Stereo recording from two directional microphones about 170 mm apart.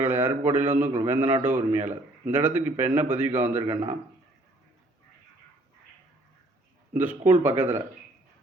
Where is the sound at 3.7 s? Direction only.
30° right (ahead or behind).